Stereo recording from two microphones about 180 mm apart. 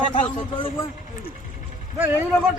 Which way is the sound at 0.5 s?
30° left (ahead or behind).